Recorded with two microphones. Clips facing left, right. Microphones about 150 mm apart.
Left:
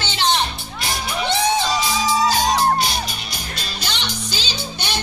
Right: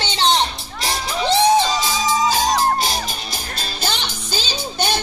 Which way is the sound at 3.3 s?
40° right (ahead or behind).